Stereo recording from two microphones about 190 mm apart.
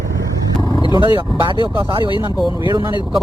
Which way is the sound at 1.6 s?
25° right (ahead or behind).